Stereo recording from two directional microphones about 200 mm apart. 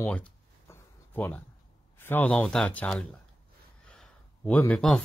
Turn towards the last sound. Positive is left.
turn(degrees=5)  # may be behind; listen again after turning